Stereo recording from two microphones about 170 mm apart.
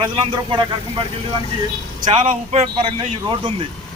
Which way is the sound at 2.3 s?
30° right (ahead or behind).